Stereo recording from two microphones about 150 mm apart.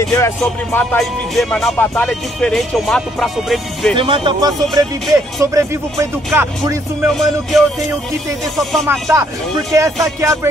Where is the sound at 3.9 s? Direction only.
35° right (ahead or behind).